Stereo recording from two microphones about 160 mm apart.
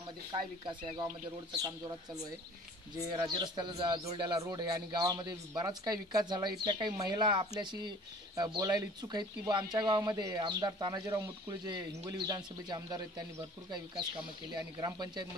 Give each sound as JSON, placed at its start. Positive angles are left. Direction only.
{"t": 0.3, "sound": "speech", "side_deg": -30}
{"t": 3.2, "sound": "speech", "side_deg": -30}
{"t": 14.8, "sound": "speech", "side_deg": -25}